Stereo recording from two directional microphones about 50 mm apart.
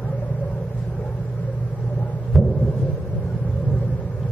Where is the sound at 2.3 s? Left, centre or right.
Centre.